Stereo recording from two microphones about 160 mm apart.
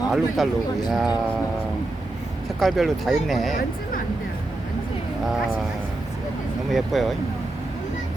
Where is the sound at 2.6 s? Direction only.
Centre (ahead or behind).